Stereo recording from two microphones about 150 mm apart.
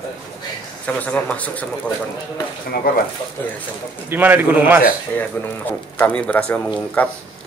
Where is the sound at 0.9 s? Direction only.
10° left (ahead or behind).